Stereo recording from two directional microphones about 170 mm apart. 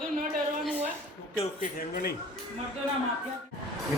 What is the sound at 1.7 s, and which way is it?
Speech, 60° left (ahead or behind).